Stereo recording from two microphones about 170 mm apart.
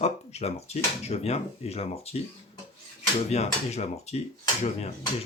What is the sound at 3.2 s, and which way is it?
Speech, 40° left (ahead or behind).